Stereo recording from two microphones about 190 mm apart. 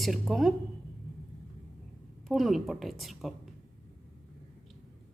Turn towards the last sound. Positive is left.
turn(degrees=0)  # may be behind; listen again after turning